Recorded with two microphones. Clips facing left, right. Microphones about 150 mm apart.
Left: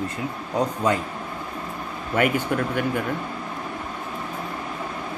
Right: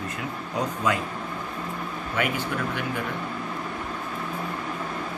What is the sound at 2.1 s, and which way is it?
Speech, 50° left (ahead or behind).